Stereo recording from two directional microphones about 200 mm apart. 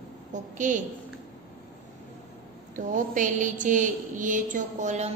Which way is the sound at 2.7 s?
40° right (ahead or behind).